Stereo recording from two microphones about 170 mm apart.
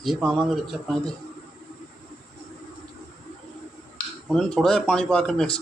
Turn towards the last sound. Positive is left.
turn(degrees=5)  # may be behind; listen again after turning